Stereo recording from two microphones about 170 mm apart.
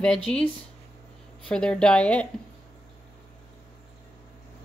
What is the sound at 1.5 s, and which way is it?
Speech, 5° left (ahead or behind).